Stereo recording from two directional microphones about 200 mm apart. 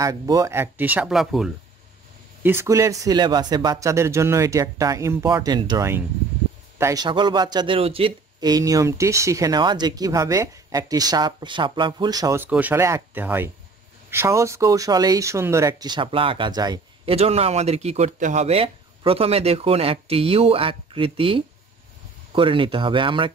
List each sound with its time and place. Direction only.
0.0 s speech: 15° right (ahead or behind); by 1.5 s centre (ahead or behind)
2.4 s speech: 15° right (ahead or behind)